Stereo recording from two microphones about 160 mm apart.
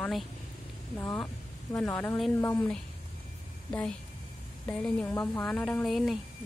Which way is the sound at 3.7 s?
10° left (ahead or behind).